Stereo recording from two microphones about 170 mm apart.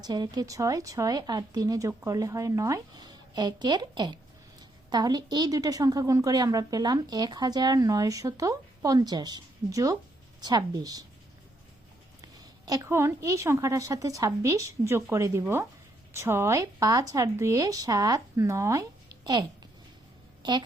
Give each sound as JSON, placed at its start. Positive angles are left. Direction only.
{"t": 0.0, "sound": "a woman's voice", "side_deg": -25}
{"t": 12.4, "sound": "a woman's voice", "side_deg": -20}